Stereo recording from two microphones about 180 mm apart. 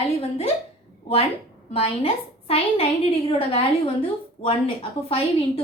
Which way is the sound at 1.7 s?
30° left (ahead or behind).